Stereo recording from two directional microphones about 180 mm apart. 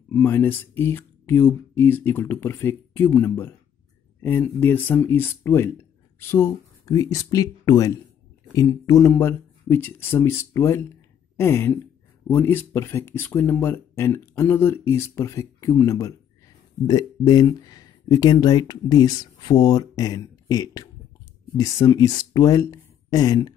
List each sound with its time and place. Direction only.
0.1 s speech: 10° left (ahead or behind)